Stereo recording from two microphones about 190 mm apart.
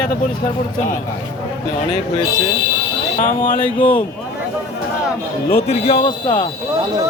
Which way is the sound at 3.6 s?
25° left (ahead or behind).